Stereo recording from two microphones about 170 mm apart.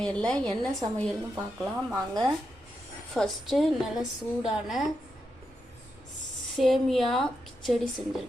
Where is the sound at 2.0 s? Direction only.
20° right (ahead or behind).